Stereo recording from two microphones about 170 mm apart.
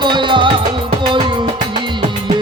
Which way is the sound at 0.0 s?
25° right (ahead or behind).